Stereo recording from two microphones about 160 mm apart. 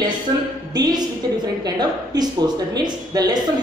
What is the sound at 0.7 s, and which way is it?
Speech, 25° right (ahead or behind).